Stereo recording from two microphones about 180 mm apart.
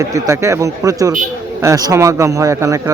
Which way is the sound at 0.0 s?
15° right (ahead or behind).